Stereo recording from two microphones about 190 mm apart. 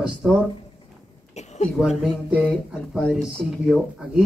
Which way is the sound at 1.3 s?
35° left (ahead or behind).